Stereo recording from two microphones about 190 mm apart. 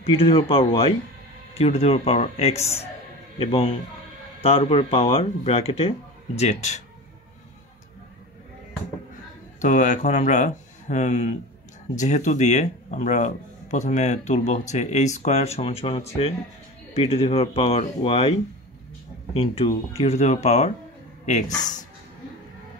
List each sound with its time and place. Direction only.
0.0 s speech: 30° left (ahead or behind)
9.6 s speech: 40° left (ahead or behind)
19.3 s speech: 30° left (ahead or behind)